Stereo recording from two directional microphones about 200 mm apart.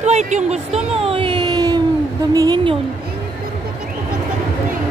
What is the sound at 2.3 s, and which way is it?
Speech, 20° right (ahead or behind).